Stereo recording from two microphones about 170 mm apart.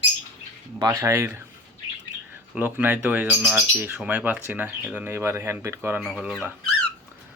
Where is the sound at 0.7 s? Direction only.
20° right (ahead or behind).